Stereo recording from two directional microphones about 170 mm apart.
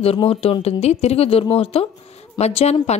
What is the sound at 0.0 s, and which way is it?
Speech, 35° left (ahead or behind).